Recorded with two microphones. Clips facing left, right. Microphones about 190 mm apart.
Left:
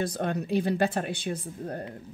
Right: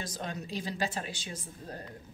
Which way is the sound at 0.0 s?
60° left (ahead or behind).